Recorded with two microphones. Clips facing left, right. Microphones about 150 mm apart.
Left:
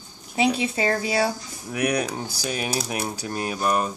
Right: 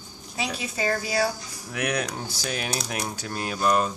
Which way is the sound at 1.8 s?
10° left (ahead or behind).